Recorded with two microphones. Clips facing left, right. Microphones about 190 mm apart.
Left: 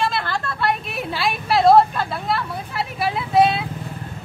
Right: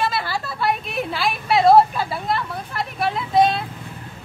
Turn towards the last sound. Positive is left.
turn(degrees=5)  # may be behind; listen again after turning